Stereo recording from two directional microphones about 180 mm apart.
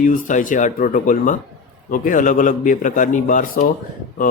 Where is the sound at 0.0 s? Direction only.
45° left (ahead or behind).